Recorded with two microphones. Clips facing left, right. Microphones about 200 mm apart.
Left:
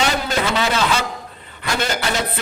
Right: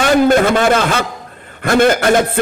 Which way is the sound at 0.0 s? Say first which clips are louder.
Right 10 dB; 55° right (ahead or behind).